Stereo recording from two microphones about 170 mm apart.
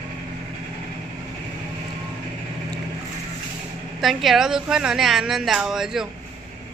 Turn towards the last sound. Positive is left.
turn(degrees=-5)  # may be behind; listen again after turning